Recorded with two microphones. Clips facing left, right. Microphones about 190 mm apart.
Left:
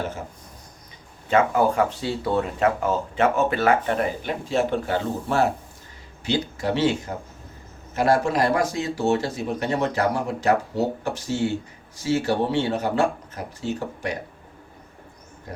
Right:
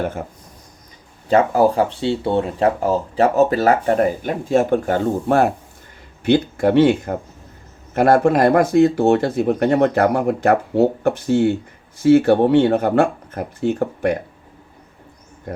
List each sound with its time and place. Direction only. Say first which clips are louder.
1.3 s speech: right 5 dB; 35° right (ahead or behind); by 14.2 s 55° right (ahead or behind)
15.5 s speech: right 8 dB; 55° right (ahead or behind)